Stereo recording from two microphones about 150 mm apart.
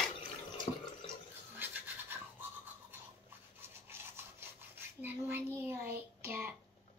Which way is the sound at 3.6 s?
15° right (ahead or behind).